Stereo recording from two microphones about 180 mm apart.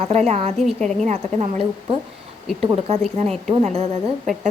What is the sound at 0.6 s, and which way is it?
Speech, centre (ahead or behind).